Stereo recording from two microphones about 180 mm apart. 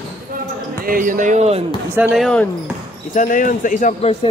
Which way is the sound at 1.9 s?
10° right (ahead or behind).